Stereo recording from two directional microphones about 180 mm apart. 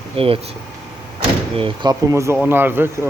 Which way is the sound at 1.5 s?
30° right (ahead or behind).